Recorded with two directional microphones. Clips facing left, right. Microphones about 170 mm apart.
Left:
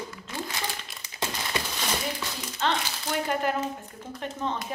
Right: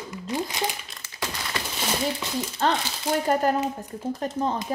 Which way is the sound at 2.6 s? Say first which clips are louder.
Right 3 dB; 40° right (ahead or behind).